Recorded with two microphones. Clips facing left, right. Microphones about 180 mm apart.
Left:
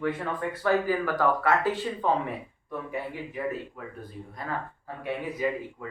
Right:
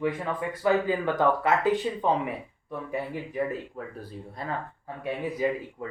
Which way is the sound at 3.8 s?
35° right (ahead or behind).